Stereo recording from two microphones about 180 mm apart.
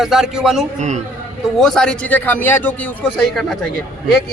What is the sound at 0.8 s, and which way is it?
Speech, 40° right (ahead or behind).